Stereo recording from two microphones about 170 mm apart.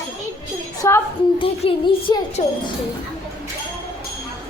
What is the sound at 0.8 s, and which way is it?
Speech, 15° left (ahead or behind).